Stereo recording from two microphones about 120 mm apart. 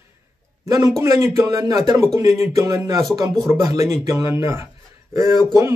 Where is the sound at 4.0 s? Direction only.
30° right (ahead or behind).